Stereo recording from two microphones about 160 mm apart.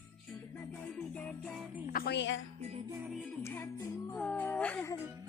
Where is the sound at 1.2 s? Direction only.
5° left (ahead or behind).